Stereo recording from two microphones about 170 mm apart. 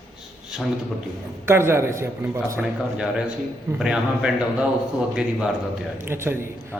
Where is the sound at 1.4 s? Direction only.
15° right (ahead or behind).